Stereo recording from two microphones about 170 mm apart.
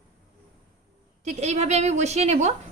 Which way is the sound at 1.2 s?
40° right (ahead or behind).